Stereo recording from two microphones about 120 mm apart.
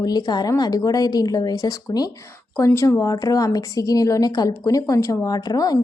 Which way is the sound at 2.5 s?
20° left (ahead or behind).